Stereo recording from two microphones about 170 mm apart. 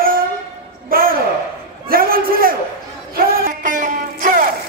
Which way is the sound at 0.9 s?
60° right (ahead or behind).